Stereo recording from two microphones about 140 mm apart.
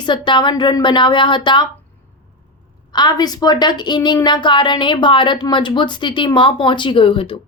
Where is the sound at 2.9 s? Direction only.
30° left (ahead or behind).